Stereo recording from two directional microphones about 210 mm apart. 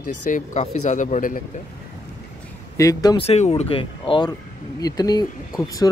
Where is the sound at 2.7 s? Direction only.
15° left (ahead or behind).